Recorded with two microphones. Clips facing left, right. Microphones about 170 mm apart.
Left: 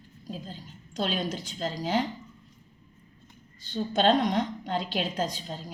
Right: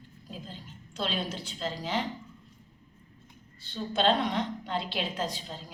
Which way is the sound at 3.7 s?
45° left (ahead or behind).